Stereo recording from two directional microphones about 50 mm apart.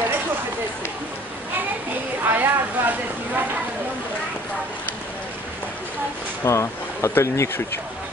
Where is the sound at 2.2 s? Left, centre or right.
Right.